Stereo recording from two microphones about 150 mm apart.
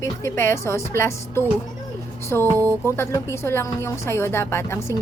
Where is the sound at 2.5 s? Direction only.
20° right (ahead or behind).